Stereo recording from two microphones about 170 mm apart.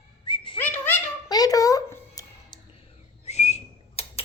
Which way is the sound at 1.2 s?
20° left (ahead or behind).